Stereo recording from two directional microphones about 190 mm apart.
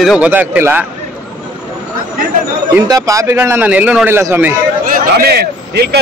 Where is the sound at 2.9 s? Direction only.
15° right (ahead or behind).